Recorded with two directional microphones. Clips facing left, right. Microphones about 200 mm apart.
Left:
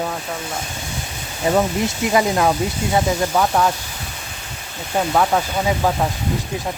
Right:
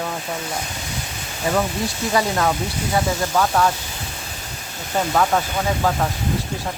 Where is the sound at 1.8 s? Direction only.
20° left (ahead or behind).